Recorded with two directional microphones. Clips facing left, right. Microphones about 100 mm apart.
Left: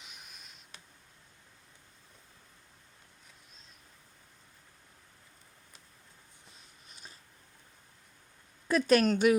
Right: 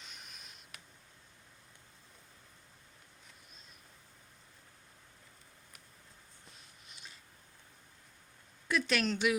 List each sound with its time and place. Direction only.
0.0 s writing: 5° left (ahead or behind)
6.8 s a sound: 40° left (ahead or behind)
8.6 s speech: 40° left (ahead or behind)